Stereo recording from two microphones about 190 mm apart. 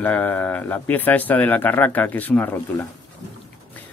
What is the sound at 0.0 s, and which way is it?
Speech, 10° left (ahead or behind).